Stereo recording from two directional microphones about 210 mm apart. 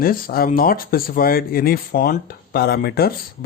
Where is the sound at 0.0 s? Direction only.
45° left (ahead or behind).